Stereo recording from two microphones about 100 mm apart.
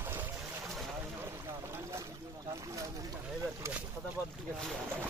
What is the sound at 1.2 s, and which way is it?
Boat, 25° right (ahead or behind).